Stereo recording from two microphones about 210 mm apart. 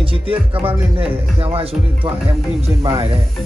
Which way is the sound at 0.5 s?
25° right (ahead or behind).